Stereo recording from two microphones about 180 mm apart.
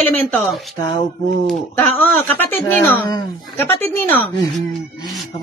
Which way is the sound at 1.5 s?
10° left (ahead or behind).